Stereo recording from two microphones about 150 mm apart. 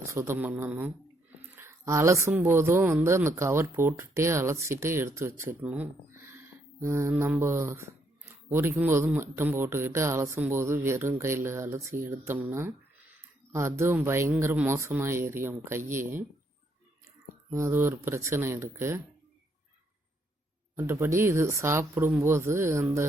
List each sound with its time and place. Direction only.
0.0 s speech: 20° right (ahead or behind)
17.5 s speech: 20° right (ahead or behind)
20.7 s speech: 15° right (ahead or behind)